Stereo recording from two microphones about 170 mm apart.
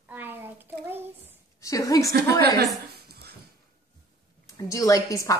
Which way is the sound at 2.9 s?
70° right (ahead or behind).